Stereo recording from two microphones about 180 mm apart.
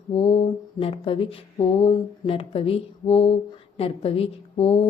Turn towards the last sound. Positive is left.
turn(degrees=30)  # may be behind; listen again after turning